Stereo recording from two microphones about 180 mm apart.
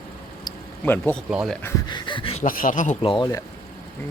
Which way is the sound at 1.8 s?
25° left (ahead or behind).